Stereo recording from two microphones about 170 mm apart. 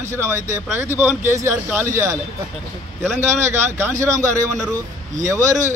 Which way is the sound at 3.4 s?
15° right (ahead or behind).